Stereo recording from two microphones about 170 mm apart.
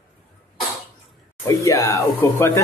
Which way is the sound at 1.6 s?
20° left (ahead or behind).